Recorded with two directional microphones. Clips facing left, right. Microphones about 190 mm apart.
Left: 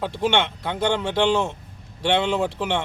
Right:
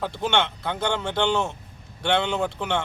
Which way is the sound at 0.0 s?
15° left (ahead or behind).